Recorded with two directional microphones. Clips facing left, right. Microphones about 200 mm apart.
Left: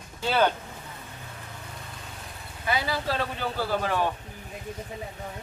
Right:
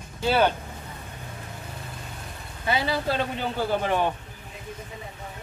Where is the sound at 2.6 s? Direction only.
25° right (ahead or behind).